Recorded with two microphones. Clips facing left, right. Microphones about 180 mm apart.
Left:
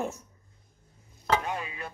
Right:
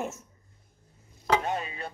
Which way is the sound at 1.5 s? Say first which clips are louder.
Right 3 dB; 25° right (ahead or behind).